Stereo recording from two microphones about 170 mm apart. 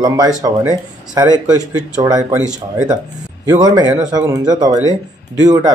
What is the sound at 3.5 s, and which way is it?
Speech, 25° right (ahead or behind).